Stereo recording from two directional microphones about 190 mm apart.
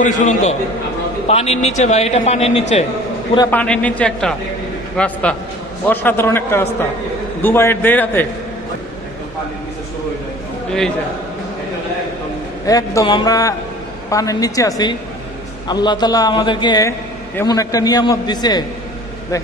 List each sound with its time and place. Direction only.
0.0 s a man's voice: 40° left (ahead or behind)
3.4 s a man's voice: 5° left (ahead or behind)
12.6 s a man's voice: 20° left (ahead or behind)
15.7 s a man's voice: 20° left (ahead or behind)